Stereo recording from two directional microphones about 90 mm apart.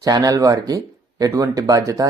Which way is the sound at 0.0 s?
40° right (ahead or behind).